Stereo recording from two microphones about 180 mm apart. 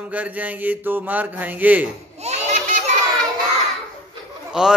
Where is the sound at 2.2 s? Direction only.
40° right (ahead or behind).